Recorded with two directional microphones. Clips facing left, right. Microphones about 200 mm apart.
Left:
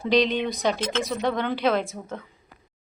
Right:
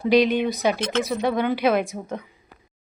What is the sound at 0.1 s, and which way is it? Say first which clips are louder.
A woman's voice: right 3 dB; 10° right (ahead or behind).